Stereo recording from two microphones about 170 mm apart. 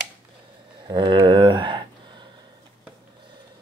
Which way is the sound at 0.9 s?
25° right (ahead or behind).